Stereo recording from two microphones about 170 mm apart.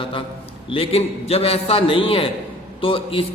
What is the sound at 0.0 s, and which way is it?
A man's voice, 30° left (ahead or behind).